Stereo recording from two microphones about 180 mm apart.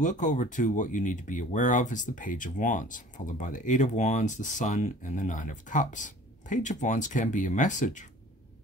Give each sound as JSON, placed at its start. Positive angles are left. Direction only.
{"t": 0.0, "sound": "speech", "side_deg": 45}